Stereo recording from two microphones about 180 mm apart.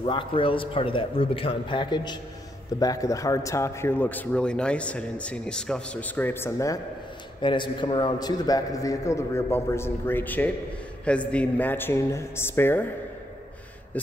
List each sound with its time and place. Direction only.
0.0 s a man's voice: 25° left (ahead or behind)
7.4 s a man's voice: 25° left (ahead or behind)
13.9 s a sound: 10° left (ahead or behind)